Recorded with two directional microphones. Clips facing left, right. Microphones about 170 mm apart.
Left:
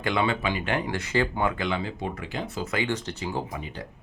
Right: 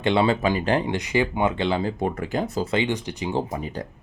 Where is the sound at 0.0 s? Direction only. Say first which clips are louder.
Right 5 dB; 30° right (ahead or behind).